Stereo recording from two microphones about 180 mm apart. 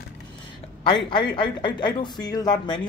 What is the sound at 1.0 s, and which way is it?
Speech, 25° left (ahead or behind).